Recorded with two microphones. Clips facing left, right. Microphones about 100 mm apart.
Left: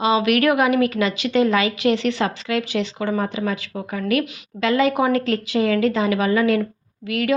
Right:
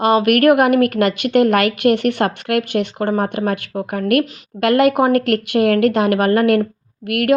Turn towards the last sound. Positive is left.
turn(degrees=-60)  # may be behind; listen again after turning